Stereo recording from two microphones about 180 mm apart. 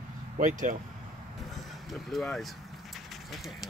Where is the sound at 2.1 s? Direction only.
Centre (ahead or behind).